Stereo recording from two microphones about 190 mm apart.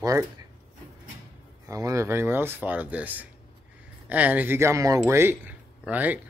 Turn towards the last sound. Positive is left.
turn(degrees=-10)  # may be behind; listen again after turning